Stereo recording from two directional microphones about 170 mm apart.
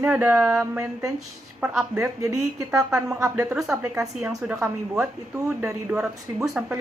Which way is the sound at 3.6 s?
5° right (ahead or behind).